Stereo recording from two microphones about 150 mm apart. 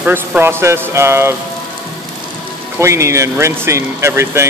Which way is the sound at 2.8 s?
20° right (ahead or behind).